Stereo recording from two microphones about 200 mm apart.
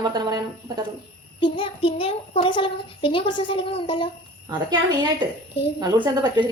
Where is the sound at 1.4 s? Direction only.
25° left (ahead or behind).